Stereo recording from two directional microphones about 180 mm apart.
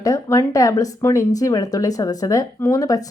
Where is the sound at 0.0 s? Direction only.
20° left (ahead or behind).